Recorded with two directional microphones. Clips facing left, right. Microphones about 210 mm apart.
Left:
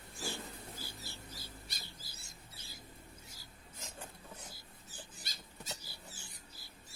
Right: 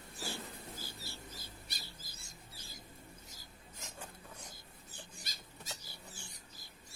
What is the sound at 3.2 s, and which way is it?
Filing, 10° left (ahead or behind).